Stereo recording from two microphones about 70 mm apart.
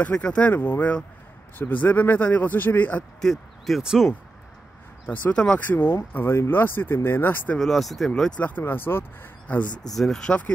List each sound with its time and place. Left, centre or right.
0.0 s speech: centre
3.0 s speech: centre
3.8 s speech: centre
5.0 s speech: left
5.7 s speech: left
7.5 s speech: centre
8.4 s speech: left
9.8 s speech: centre